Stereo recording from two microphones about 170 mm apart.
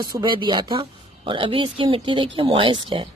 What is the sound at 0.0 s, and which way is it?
Speech, 25° right (ahead or behind).